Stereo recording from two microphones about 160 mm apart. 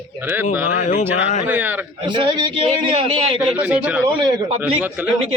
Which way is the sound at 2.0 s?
30° right (ahead or behind).